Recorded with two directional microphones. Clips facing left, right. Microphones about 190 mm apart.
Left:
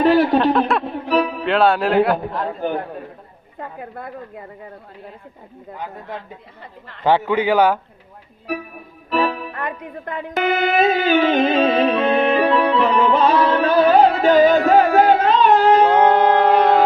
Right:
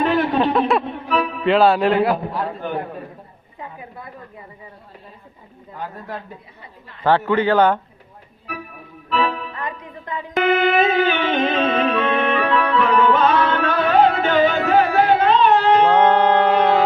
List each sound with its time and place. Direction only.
0.0 s a sound: 35° left (ahead or behind)
0.3 s a man's voice: centre (ahead or behind)
1.0 s music: 35° left (ahead or behind)
1.5 s a man's voice: centre (ahead or behind)
3.6 s a sound: 55° left (ahead or behind)
5.7 s a man's voice: 15° left (ahead or behind)
9.0 s music: 50° left (ahead or behind)
10.4 s music: 40° left (ahead or behind)
15.9 s music: 10° left (ahead or behind)